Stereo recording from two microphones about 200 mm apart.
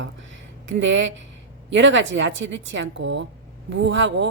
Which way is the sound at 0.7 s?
65° right (ahead or behind).